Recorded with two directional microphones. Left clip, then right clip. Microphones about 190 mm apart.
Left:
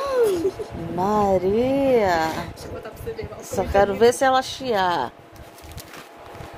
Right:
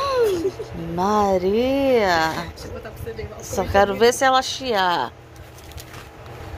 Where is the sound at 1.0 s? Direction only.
10° left (ahead or behind).